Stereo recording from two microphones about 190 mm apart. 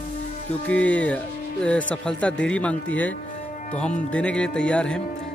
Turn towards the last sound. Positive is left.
turn(degrees=5)  # may be behind; listen again after turning